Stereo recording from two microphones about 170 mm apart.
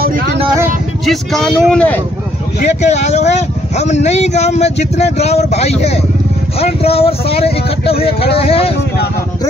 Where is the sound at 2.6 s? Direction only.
40° left (ahead or behind).